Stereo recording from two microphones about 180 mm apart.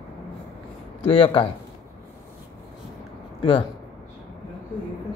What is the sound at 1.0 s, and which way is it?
Speech, 30° left (ahead or behind).